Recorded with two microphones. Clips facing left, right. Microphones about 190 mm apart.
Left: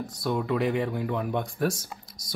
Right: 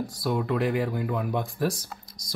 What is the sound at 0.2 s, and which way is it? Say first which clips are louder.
Speech: even; 5° right (ahead or behind).